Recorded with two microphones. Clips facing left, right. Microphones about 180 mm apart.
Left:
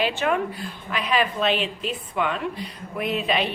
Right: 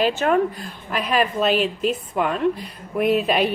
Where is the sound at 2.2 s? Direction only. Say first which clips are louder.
Right 2 dB; 40° right (ahead or behind).